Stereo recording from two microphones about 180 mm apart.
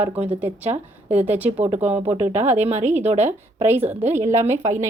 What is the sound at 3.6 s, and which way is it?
A woman's voice, 10° right (ahead or behind).